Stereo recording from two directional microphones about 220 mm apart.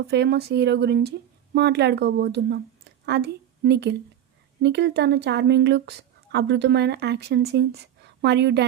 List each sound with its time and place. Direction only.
0.1 s a woman's voice: 50° right (ahead or behind)